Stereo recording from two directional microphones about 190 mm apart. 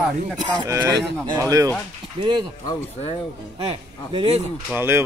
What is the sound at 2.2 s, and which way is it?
Speech, 30° right (ahead or behind).